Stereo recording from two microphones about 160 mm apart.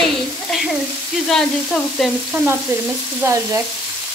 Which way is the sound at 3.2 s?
20° right (ahead or behind).